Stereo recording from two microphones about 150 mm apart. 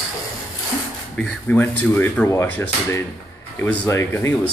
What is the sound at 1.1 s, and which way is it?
Speech, 10° left (ahead or behind).